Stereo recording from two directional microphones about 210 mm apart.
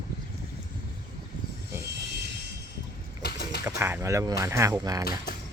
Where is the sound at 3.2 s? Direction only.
45° left (ahead or behind).